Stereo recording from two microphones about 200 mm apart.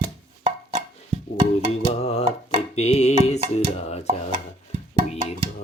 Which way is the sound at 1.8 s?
30° left (ahead or behind).